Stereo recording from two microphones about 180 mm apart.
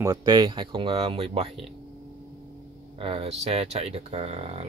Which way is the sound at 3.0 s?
30° right (ahead or behind).